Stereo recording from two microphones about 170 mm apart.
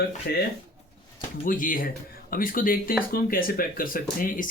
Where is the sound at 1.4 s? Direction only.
55° left (ahead or behind).